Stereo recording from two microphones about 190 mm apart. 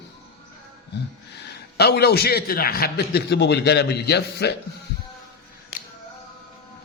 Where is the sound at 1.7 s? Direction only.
60° left (ahead or behind).